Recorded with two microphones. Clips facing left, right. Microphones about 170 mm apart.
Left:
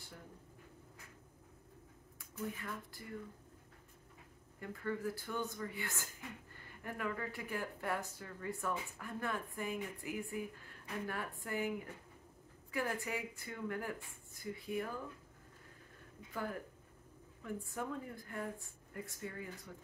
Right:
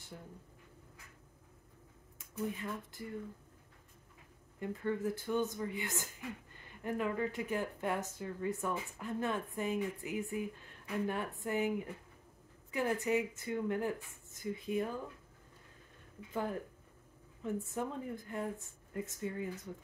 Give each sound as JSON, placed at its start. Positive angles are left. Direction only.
{"t": 2.1, "sound": "speech", "side_deg": -20}
{"t": 4.6, "sound": "speech", "side_deg": -20}
{"t": 17.4, "sound": "speech", "side_deg": -20}